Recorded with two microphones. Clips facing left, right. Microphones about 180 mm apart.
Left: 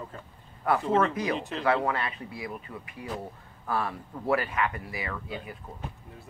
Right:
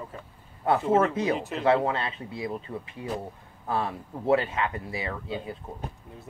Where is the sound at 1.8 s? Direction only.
25° right (ahead or behind).